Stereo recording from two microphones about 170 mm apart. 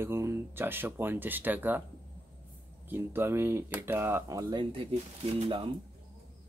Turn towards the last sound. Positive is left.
turn(degrees=-30)  # may be behind; listen again after turning